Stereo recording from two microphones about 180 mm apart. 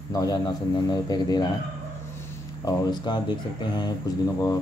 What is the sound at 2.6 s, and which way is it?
Speech, 25° left (ahead or behind).